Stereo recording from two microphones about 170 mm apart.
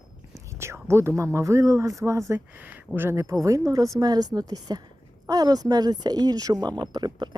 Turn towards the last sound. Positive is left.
turn(degrees=-25)  # may be behind; listen again after turning